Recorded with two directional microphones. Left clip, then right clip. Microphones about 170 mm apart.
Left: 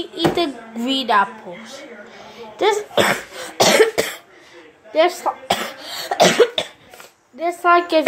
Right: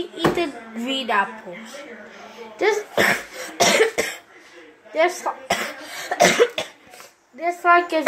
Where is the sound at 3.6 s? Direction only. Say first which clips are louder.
Left 3 dB; 35° left (ahead or behind).